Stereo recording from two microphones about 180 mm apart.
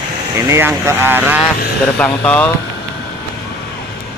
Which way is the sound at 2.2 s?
10° left (ahead or behind).